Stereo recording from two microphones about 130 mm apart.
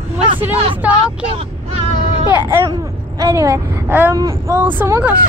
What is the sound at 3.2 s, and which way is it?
Speech, 25° right (ahead or behind).